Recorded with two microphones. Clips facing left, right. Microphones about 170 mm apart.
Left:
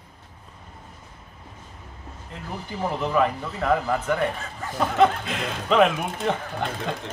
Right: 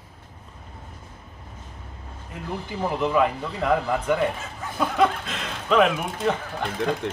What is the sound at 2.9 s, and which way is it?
Speech, 15° right (ahead or behind).